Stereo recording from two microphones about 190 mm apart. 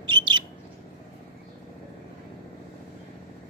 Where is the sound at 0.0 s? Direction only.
25° right (ahead or behind).